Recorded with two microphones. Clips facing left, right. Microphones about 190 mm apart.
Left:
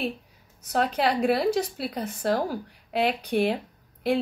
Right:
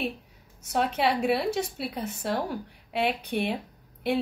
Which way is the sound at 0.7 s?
Centre (ahead or behind).